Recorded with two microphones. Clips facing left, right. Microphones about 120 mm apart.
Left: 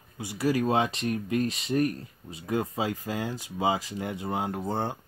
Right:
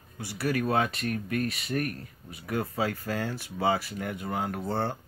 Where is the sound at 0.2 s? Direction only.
20° left (ahead or behind).